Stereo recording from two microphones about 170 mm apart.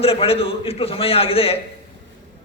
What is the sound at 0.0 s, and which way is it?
A man's voice, 35° left (ahead or behind).